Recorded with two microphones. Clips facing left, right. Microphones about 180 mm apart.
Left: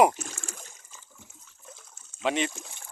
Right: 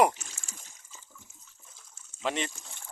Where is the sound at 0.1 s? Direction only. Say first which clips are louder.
Left 7 dB; 55° left (ahead or behind).